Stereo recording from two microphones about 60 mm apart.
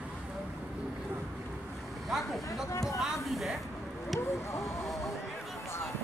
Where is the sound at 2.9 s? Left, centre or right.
Centre.